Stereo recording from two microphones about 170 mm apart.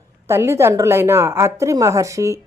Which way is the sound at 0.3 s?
15° right (ahead or behind).